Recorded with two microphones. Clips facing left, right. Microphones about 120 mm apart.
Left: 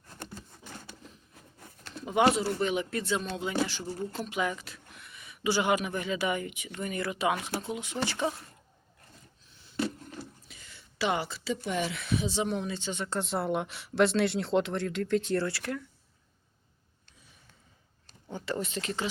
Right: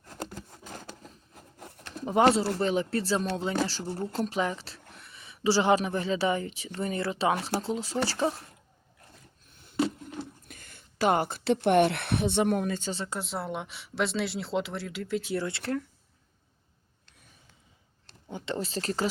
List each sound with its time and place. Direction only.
1.5 s a sound: 70° right (ahead or behind)
2.0 s speech: 40° right (ahead or behind)
9.5 s a sound: 55° right (ahead or behind)
10.4 s speech: 50° right (ahead or behind)
13.1 s speech: 5° right (ahead or behind)
15.4 s speech: 25° right (ahead or behind)
18.3 s speech: 20° right (ahead or behind); by 19.1 s 40° right (ahead or behind)